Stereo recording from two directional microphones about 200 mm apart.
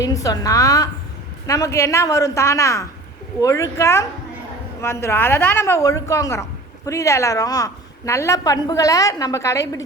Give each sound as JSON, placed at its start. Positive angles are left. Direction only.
{"t": 0.0, "sound": "a woman's voice", "side_deg": 15}